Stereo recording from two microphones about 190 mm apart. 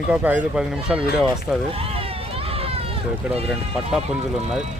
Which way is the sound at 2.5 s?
30° right (ahead or behind).